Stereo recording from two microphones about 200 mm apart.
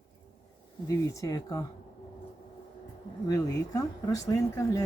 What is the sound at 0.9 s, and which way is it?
Speech, 15° left (ahead or behind).